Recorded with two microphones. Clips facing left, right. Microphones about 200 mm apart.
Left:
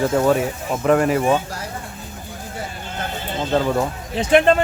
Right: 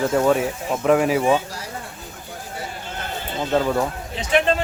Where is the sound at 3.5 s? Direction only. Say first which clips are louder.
Left 1 dB; centre (ahead or behind).